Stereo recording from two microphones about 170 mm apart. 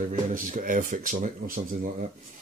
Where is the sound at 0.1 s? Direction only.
50° right (ahead or behind).